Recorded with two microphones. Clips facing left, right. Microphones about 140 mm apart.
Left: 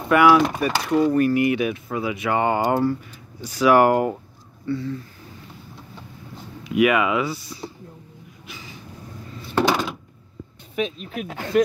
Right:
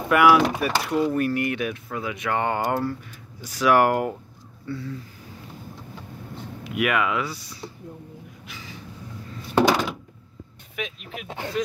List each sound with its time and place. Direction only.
0.1 s speech: 5° right (ahead or behind)
6.6 s speech: centre (ahead or behind)
9.6 s a sound: 15° right (ahead or behind)
10.8 s speech: 35° left (ahead or behind)
11.2 s speech: 20° right (ahead or behind)